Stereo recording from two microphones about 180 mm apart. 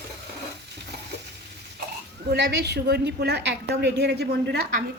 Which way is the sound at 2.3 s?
65° right (ahead or behind).